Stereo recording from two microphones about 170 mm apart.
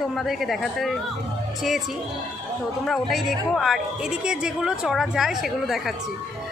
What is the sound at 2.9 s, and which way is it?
A woman's voice, centre (ahead or behind).